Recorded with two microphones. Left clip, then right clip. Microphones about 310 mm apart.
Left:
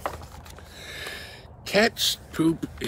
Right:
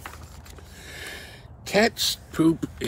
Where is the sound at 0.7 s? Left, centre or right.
Centre.